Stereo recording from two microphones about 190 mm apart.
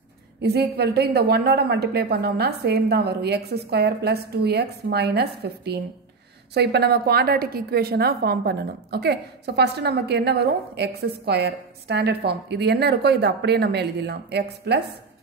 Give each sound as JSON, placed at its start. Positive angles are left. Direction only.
{"t": 0.4, "sound": "a woman's voice", "side_deg": -60}